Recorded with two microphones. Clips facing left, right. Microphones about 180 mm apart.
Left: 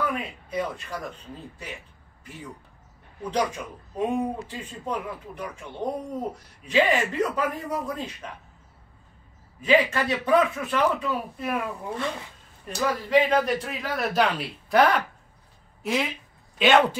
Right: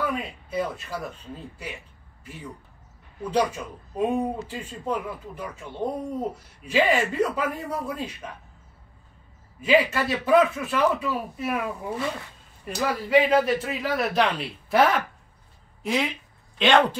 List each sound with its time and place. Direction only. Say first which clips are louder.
0.0 s speech: even; 5° right (ahead or behind)
3.3 s speech: right 2 dB; 10° right (ahead or behind)
9.6 s speech: even; 10° right (ahead or behind)